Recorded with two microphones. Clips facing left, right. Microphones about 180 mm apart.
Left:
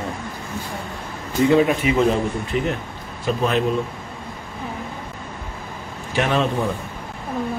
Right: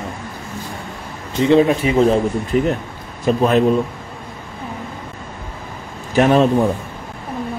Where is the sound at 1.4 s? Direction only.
30° right (ahead or behind).